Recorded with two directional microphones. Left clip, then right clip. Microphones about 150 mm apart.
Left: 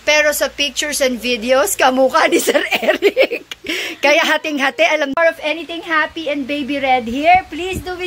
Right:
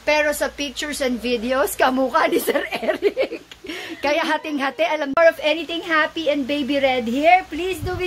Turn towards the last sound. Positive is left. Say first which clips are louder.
# left 2 dB
turn(degrees=-10)  # may be behind; listen again after turning